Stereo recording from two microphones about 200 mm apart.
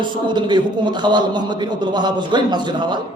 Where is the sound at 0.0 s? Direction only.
25° right (ahead or behind).